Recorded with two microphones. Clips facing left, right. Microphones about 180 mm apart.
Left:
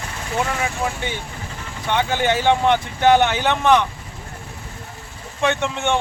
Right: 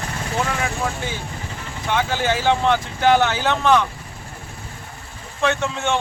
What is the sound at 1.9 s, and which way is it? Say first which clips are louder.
Speech: left 2 dB; 20° left (ahead or behind).